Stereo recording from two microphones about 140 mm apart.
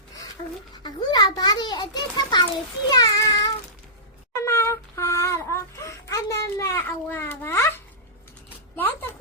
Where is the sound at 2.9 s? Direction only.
25° left (ahead or behind).